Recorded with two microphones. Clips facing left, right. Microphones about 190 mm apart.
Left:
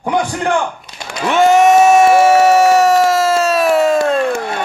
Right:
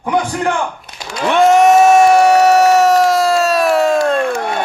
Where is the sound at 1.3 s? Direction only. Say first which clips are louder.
Even; centre (ahead or behind).